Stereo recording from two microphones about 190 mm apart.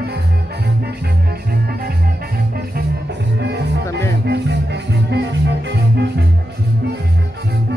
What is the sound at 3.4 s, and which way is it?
Music, 65° right (ahead or behind).